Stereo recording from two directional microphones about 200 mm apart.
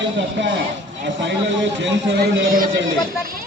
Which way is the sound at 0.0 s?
65° right (ahead or behind).